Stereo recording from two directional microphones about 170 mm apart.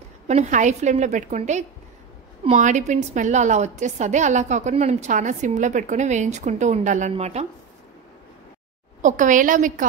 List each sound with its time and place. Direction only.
0.3 s a woman's voice: 45° right (ahead or behind)
9.0 s a woman's voice: 50° right (ahead or behind)